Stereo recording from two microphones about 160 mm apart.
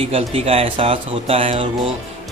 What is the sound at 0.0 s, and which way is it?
Speech, 35° right (ahead or behind).